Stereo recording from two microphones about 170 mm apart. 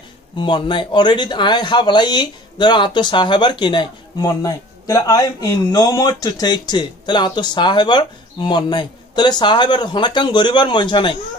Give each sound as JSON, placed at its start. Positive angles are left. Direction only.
{"t": 0.4, "sound": "speech", "side_deg": 30}